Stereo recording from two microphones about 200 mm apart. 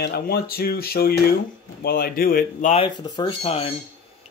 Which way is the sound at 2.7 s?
25° left (ahead or behind).